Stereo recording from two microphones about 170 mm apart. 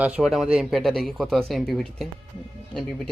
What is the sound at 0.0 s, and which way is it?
Speech, 5° right (ahead or behind).